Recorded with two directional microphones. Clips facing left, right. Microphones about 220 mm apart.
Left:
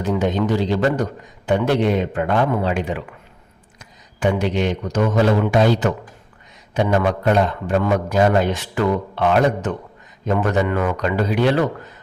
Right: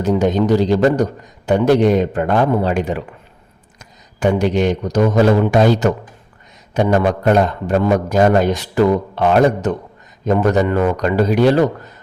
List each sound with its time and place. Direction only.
0.0 s a man's voice: 40° right (ahead or behind)